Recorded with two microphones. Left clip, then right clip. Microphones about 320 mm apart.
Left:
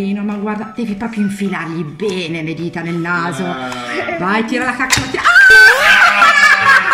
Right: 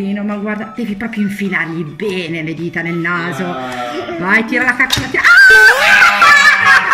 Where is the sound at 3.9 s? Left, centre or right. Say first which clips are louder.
Left 3 dB; left.